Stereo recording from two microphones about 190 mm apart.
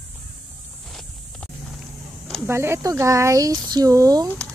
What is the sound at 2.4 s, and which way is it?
A woman's voice, 15° right (ahead or behind).